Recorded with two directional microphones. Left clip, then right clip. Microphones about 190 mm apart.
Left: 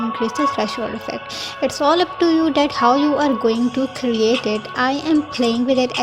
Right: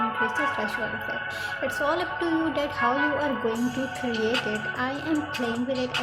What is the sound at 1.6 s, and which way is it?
A woman's voice, 40° left (ahead or behind).